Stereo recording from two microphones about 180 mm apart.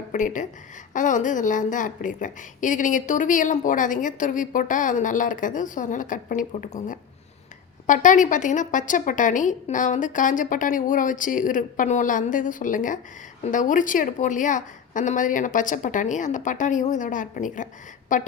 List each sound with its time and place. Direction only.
0.1 s a woman's voice: 45° left (ahead or behind)